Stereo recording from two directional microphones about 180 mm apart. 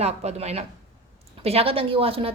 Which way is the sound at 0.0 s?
35° right (ahead or behind).